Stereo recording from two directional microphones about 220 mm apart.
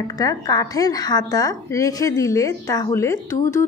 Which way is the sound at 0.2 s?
15° left (ahead or behind).